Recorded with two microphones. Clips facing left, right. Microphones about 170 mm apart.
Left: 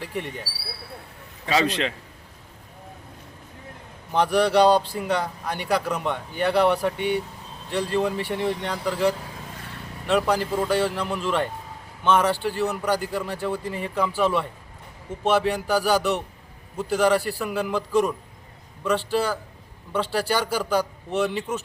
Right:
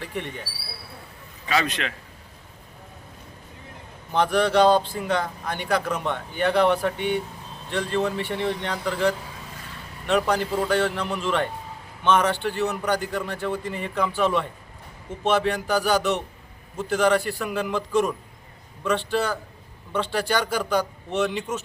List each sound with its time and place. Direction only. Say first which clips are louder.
1.5 s a man's voice: left 3 dB; 30° left (ahead or behind)
4.1 s a man's voice: left 1 dB; 10° left (ahead or behind)